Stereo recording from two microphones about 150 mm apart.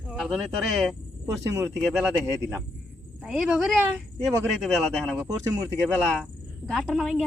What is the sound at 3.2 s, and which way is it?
Speech, 5° right (ahead or behind).